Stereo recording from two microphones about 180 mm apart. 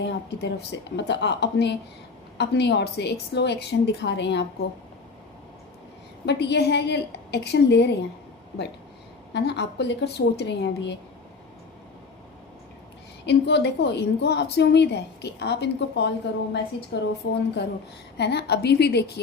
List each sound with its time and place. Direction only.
0.0 s a woman's voice: 70° left (ahead or behind)
6.2 s a woman's voice: 70° left (ahead or behind)
9.3 s a woman's voice: 70° left (ahead or behind)
13.2 s a woman's voice: 70° left (ahead or behind)
18.2 s a woman's voice: 65° left (ahead or behind)